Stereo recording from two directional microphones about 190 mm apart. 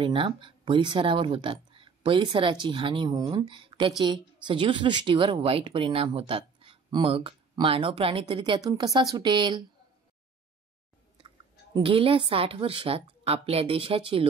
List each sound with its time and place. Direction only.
0.0 s a woman's voice: 25° right (ahead or behind)
11.2 s a woman's voice: 25° right (ahead or behind)